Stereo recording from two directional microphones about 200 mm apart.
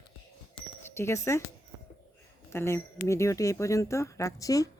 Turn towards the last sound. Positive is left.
turn(degrees=15)  # may be behind; listen again after turning